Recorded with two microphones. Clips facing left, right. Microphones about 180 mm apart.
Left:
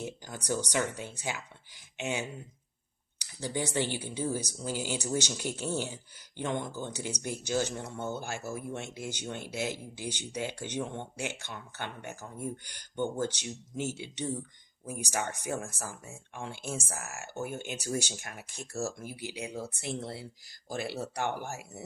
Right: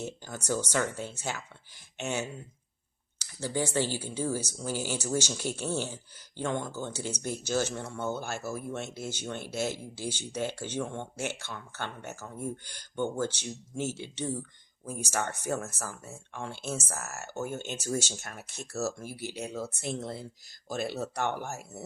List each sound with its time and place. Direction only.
0.0 s speech: 15° left (ahead or behind)